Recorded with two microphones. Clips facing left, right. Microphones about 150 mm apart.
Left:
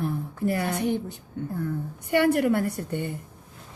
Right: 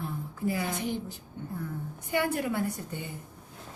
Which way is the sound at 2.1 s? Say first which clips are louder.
Left 8 dB; 65° left (ahead or behind).